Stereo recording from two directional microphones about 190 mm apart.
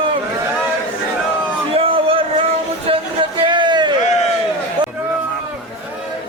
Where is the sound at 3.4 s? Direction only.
25° right (ahead or behind).